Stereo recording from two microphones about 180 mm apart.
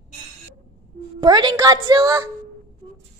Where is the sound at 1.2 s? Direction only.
25° right (ahead or behind).